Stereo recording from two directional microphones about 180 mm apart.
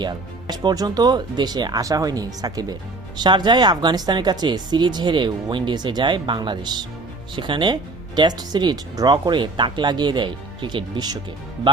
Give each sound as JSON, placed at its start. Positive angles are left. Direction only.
{"t": 0.0, "sound": "speech", "side_deg": -25}